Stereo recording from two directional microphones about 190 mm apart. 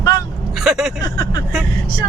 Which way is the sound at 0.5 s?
Centre (ahead or behind).